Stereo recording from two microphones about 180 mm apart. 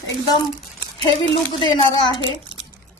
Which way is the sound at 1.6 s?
25° left (ahead or behind).